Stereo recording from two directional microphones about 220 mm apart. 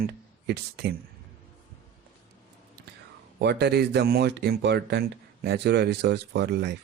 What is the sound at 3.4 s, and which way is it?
Speech, 50° right (ahead or behind).